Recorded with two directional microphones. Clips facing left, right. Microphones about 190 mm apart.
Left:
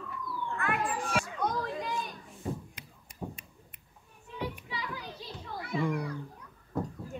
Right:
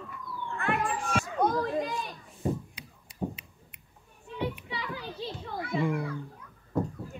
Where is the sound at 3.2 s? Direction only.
20° right (ahead or behind).